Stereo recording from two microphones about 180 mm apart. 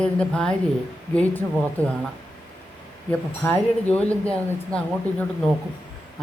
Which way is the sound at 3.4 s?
10° left (ahead or behind).